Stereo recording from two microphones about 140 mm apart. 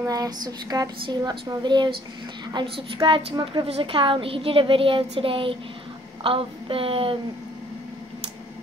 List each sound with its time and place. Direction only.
0.0 s a woman's voice: 25° right (ahead or behind); by 7.2 s 40° right (ahead or behind)